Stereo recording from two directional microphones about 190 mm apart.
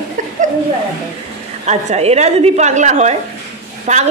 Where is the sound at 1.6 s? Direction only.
35° right (ahead or behind).